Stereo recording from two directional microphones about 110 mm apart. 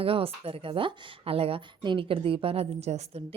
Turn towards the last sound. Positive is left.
turn(degrees=-75)  # may be behind; listen again after turning